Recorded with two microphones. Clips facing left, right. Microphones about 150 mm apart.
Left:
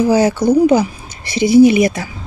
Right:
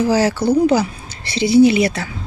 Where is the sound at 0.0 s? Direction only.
20° left (ahead or behind).